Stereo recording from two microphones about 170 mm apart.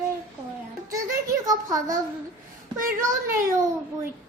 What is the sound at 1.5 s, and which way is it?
Speech, 20° right (ahead or behind).